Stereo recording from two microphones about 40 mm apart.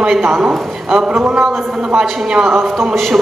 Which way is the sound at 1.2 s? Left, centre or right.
Centre.